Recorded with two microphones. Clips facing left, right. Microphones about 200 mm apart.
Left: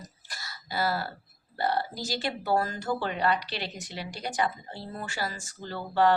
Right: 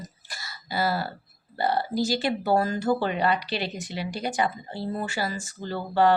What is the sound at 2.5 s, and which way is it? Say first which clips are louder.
Speech: right 5 dB; 10° right (ahead or behind).